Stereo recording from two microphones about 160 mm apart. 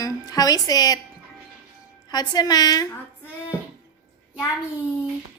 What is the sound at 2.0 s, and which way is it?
Speech, 25° left (ahead or behind).